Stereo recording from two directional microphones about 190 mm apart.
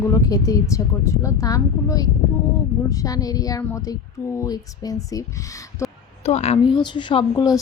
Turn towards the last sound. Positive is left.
turn(degrees=20)  # may be behind; listen again after turning